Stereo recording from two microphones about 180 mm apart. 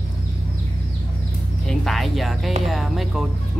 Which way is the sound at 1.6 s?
Centre (ahead or behind).